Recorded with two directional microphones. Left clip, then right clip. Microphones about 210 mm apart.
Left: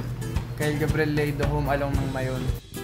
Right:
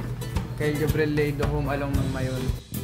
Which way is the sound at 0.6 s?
20° left (ahead or behind).